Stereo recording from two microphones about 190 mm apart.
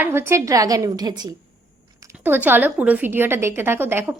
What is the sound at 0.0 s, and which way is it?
A woman's voice, 10° right (ahead or behind).